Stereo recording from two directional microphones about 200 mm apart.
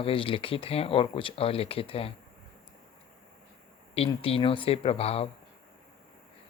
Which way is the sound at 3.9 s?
30° left (ahead or behind).